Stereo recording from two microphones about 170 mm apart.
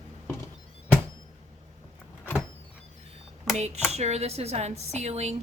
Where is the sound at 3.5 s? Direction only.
40° right (ahead or behind).